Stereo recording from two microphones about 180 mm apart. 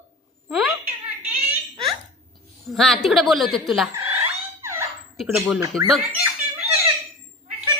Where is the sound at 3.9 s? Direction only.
15° right (ahead or behind).